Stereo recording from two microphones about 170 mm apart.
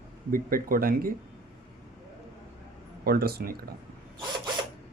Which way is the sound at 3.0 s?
65° right (ahead or behind).